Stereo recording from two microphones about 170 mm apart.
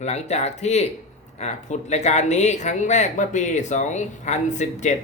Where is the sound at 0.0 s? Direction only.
40° left (ahead or behind).